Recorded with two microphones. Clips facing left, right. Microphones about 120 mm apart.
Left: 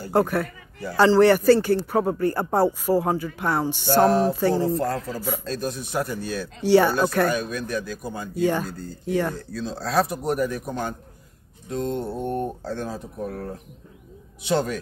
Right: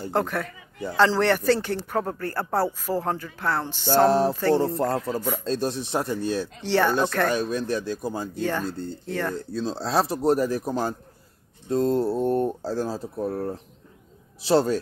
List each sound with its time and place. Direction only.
0.1 s a man's voice: 5° left (ahead or behind)
4.0 s speech: 30° right (ahead or behind)
4.3 s speech: 5° left (ahead or behind)
4.7 s speech: 25° right (ahead or behind)
6.6 s a man's voice: 10° left (ahead or behind)
7.3 s speech: 30° right (ahead or behind)
8.4 s a man's voice: 10° left (ahead or behind)
8.6 s speech: 25° right (ahead or behind)
9.0 s a man's voice: 10° left (ahead or behind)
9.5 s speech: 30° right (ahead or behind)
14.4 s speech: 30° right (ahead or behind)